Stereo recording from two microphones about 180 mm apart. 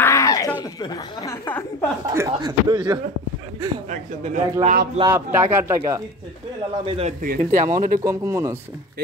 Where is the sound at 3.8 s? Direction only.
40° right (ahead or behind).